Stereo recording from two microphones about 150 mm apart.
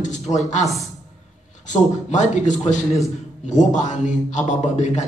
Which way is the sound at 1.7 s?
55° left (ahead or behind).